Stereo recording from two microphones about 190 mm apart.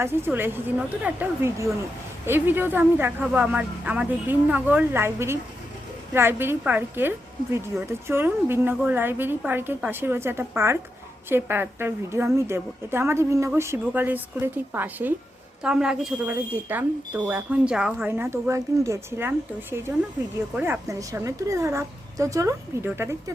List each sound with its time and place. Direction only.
0.0 s a woman's voice: 10° right (ahead or behind)
20.6 s a woman's voice: 15° right (ahead or behind)